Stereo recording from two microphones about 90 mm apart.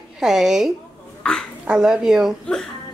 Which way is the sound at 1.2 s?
10° left (ahead or behind).